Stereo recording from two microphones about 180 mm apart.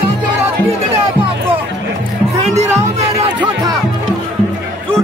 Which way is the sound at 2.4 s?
40° right (ahead or behind).